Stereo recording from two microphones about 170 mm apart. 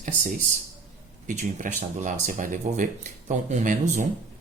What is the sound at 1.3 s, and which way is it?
Speech, 50° right (ahead or behind).